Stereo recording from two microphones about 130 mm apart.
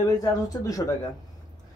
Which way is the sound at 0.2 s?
25° left (ahead or behind).